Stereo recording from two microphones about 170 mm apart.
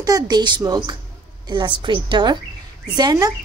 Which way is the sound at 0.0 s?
25° right (ahead or behind).